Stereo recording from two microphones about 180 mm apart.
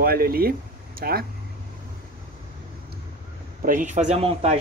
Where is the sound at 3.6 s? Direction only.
45° right (ahead or behind).